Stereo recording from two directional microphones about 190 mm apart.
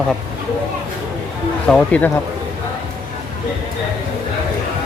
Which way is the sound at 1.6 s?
5° left (ahead or behind).